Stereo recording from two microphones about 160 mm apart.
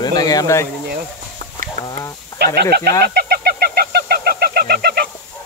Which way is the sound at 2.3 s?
90° right.